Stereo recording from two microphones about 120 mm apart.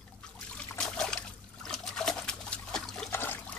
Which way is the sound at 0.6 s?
5° left (ahead or behind).